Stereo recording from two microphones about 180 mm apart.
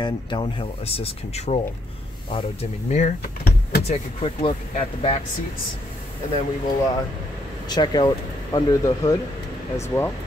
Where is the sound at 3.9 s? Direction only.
30° left (ahead or behind).